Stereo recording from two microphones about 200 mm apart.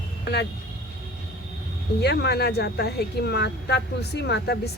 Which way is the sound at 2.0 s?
55° left (ahead or behind).